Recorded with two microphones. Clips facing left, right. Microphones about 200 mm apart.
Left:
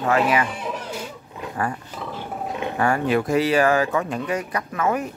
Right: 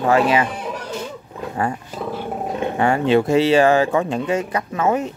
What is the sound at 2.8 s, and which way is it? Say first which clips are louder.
Speech: right 4 dB; 25° right (ahead or behind).